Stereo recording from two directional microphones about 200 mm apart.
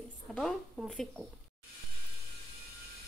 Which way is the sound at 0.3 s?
Centre (ahead or behind).